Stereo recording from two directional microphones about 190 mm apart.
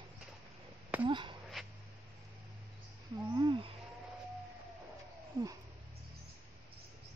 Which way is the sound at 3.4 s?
25° right (ahead or behind).